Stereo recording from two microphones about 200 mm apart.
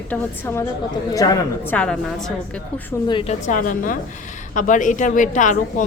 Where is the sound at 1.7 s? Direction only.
5° left (ahead or behind).